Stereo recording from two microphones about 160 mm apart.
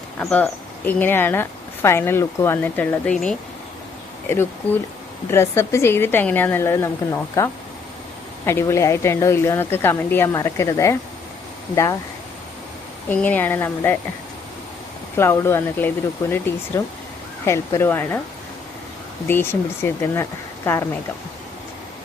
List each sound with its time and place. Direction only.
0.2 s speech: 5° left (ahead or behind); by 11.9 s 20° left (ahead or behind)
13.1 s speech: 10° left (ahead or behind)
15.1 s speech: 15° left (ahead or behind)
19.3 s speech: 15° left (ahead or behind)